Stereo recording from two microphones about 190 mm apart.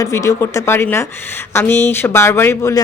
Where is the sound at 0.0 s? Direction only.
15° left (ahead or behind).